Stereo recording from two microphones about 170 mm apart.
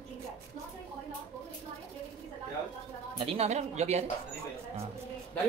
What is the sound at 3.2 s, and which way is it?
Speech, 35° right (ahead or behind).